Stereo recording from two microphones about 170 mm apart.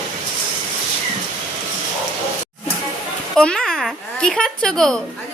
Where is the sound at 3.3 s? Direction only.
5° left (ahead or behind).